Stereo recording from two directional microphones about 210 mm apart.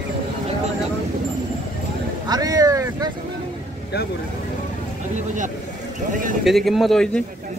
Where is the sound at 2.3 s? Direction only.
15° right (ahead or behind).